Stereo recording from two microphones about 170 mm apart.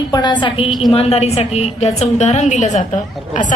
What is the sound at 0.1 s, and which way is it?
Speech, 25° left (ahead or behind).